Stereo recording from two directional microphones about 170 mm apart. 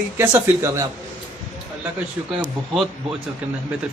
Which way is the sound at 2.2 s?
10° right (ahead or behind).